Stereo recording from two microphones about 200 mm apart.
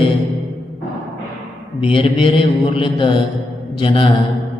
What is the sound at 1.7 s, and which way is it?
Speech, 25° left (ahead or behind).